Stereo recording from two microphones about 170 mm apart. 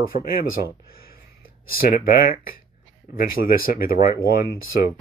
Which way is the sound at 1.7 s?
60° left (ahead or behind).